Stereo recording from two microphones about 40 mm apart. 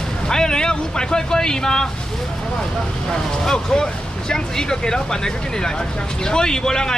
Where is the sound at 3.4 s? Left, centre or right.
Centre.